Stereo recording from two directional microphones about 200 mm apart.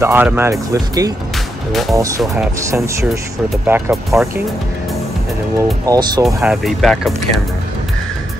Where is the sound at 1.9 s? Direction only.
15° right (ahead or behind).